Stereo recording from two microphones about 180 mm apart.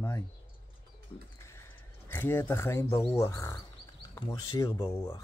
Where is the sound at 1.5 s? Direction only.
10° left (ahead or behind).